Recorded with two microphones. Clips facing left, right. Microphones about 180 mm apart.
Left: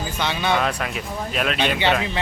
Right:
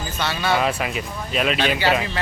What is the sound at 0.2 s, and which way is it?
Speech, 15° left (ahead or behind).